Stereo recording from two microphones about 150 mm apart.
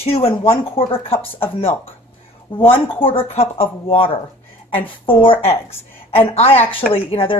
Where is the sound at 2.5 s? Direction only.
35° left (ahead or behind).